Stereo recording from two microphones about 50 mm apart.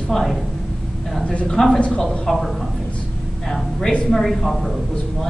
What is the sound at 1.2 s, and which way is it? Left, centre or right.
Speech, left.